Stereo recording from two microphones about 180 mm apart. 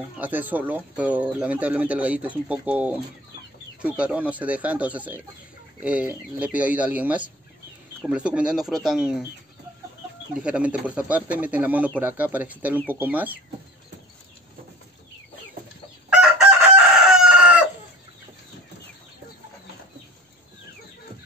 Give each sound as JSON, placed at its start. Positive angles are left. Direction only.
{"t": 0.2, "sound": "speech", "side_deg": -10}
{"t": 10.3, "sound": "speech", "side_deg": -5}
{"t": 16.1, "sound": "chicken", "side_deg": -5}